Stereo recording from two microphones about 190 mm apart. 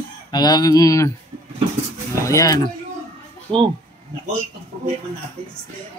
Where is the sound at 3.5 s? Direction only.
25° right (ahead or behind).